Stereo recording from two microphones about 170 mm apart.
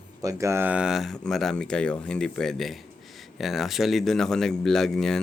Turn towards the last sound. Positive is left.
turn(degrees=5)  # may be behind; listen again after turning